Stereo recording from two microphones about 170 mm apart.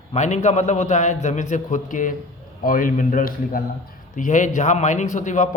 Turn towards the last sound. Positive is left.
turn(degrees=45)  # may be behind; listen again after turning